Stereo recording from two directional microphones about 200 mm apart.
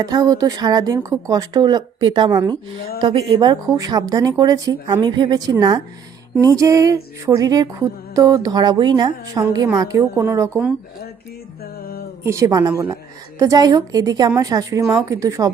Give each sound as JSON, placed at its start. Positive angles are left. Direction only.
{"t": 0.0, "sound": "a woman's voice", "side_deg": -20}
{"t": 6.4, "sound": "music", "side_deg": -15}
{"t": 11.6, "sound": "music", "side_deg": 50}
{"t": 12.2, "sound": "music", "side_deg": -15}